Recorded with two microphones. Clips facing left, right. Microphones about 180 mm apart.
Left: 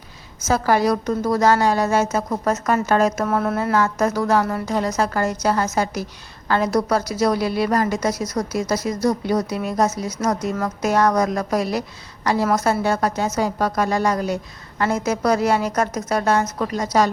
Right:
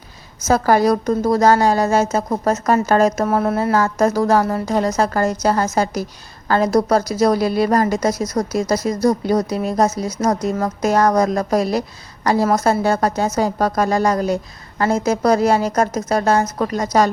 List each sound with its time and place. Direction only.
0.4 s a woman's voice: 40° right (ahead or behind)
3.2 s a woman's voice: 30° right (ahead or behind); by 17.1 s 45° right (ahead or behind)